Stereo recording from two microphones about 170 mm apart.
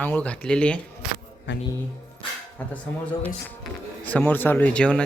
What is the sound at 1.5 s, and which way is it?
Speech, 90° left.